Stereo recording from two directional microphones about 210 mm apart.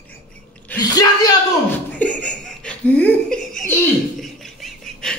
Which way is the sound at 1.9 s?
5° left (ahead or behind).